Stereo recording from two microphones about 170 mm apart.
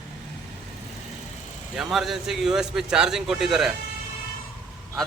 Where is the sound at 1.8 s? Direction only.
Centre (ahead or behind).